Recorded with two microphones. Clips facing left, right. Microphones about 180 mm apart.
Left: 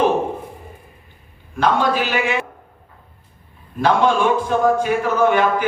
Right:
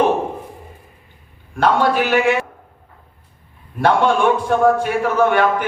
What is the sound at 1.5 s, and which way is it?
Speech, 60° right (ahead or behind).